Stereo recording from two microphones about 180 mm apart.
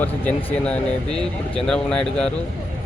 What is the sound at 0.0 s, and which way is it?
Speech, 5° left (ahead or behind).